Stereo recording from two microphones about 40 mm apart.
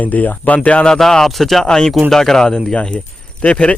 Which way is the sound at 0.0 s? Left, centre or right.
Left.